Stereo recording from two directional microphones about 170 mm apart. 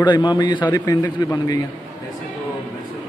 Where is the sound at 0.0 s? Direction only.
25° left (ahead or behind).